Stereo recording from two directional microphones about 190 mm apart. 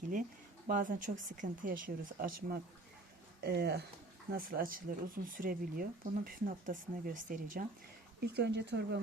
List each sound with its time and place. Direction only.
0.7 s speech: 45° right (ahead or behind)
8.3 s speech: 60° right (ahead or behind)